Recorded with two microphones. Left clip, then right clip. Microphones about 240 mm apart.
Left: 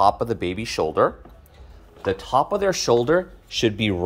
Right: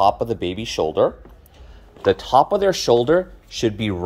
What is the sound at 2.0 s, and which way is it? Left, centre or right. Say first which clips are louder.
Speech: right 5 dB; centre.